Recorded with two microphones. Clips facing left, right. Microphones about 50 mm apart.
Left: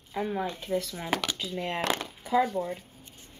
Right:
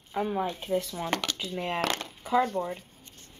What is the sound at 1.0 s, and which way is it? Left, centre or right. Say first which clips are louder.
Speech: even; centre.